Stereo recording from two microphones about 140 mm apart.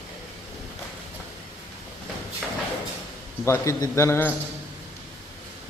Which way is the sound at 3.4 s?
20° left (ahead or behind).